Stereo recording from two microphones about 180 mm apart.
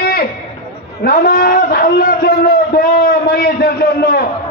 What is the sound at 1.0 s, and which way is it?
A man's voice, 55° left (ahead or behind).